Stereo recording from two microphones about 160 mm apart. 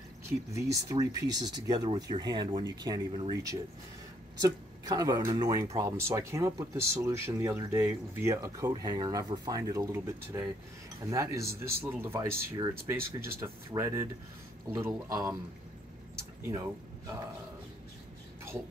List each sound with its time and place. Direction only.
0.5 s speech: 20° right (ahead or behind)
16.4 s speech: 20° right (ahead or behind)